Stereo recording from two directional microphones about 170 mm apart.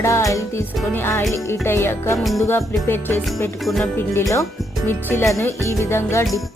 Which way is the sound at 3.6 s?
Centre (ahead or behind).